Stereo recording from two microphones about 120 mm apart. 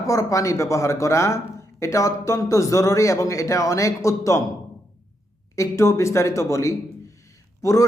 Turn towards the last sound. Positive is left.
turn(degrees=25)  # may be behind; listen again after turning